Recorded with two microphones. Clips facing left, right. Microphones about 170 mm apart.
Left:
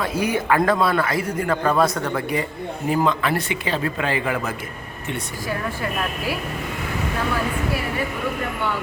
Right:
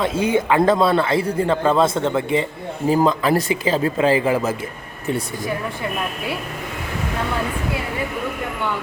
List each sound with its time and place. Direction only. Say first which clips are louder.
0.0 s a man's voice: right 4 dB; 25° right (ahead or behind)
2.9 s a man's voice: right 4 dB; 35° right (ahead or behind)